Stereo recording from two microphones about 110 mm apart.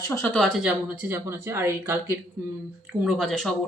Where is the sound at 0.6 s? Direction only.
15° right (ahead or behind).